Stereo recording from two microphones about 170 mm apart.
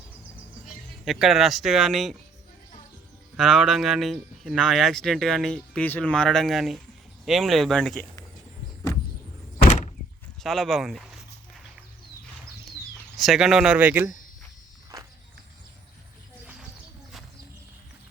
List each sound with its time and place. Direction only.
1.0 s speech: centre (ahead or behind)
3.3 s speech: centre (ahead or behind)
9.6 s thunk: 45° left (ahead or behind)
10.4 s speech: centre (ahead or behind)
13.1 s speech: centre (ahead or behind)
14.9 s walk: 20° right (ahead or behind)